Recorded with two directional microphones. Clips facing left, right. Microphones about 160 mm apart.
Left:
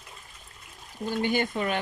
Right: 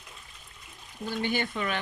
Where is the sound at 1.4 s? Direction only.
40° left (ahead or behind).